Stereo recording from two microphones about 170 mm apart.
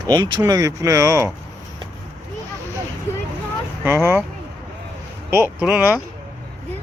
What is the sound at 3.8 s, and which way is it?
Speech, 15° right (ahead or behind).